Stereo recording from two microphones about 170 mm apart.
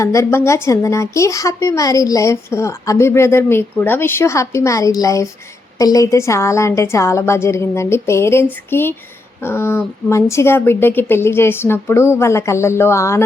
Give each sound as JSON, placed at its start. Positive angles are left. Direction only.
{"t": 0.0, "sound": "a woman's voice", "side_deg": 15}